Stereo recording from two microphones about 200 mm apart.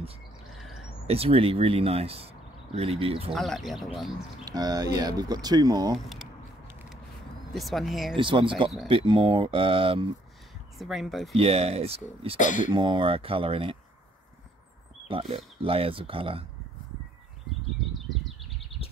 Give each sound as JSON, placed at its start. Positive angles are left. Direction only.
{"t": 1.0, "sound": "speech", "side_deg": -30}
{"t": 3.3, "sound": "speech", "side_deg": 0}
{"t": 4.5, "sound": "speech", "side_deg": -20}
{"t": 7.5, "sound": "speech", "side_deg": 0}
{"t": 8.2, "sound": "speech", "side_deg": -25}
{"t": 10.8, "sound": "speech", "side_deg": 0}
{"t": 11.3, "sound": "speech", "side_deg": -30}
{"t": 12.4, "sound": "speech", "side_deg": 40}
{"t": 12.7, "sound": "speech", "side_deg": -25}
{"t": 15.0, "sound": "speech", "side_deg": -30}